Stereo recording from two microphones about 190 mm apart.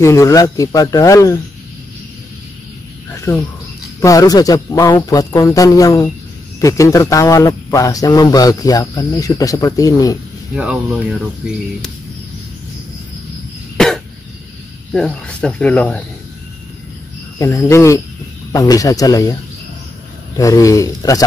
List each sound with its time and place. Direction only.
0.0 s speech: 15° left (ahead or behind)
3.3 s speech: 15° left (ahead or behind)
10.5 s speech: 5° right (ahead or behind)
13.7 s a sound: centre (ahead or behind)
14.9 s speech: 5° left (ahead or behind)
17.4 s speech: 15° left (ahead or behind)
20.3 s speech: 15° left (ahead or behind)